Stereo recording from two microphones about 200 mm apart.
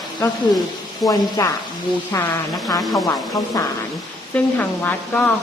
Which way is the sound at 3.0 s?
15° left (ahead or behind).